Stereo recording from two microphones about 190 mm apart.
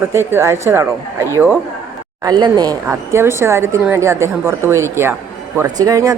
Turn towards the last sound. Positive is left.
turn(degrees=-20)  # may be behind; listen again after turning